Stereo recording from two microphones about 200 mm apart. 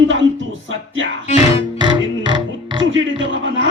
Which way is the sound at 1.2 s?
30° left (ahead or behind).